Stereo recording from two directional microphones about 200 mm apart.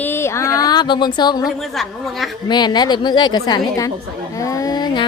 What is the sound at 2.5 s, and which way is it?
A woman's voice, 20° left (ahead or behind).